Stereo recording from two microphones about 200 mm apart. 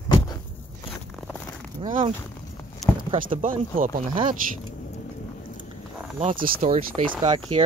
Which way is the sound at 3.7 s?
45° right (ahead or behind).